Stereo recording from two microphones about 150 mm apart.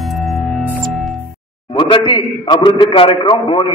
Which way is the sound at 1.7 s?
30° left (ahead or behind).